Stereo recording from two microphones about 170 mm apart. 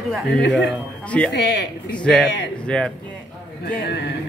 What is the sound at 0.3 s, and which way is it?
Speech, 90° left.